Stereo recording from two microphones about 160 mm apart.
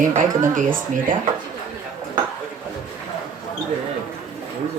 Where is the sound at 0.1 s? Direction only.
50° right (ahead or behind).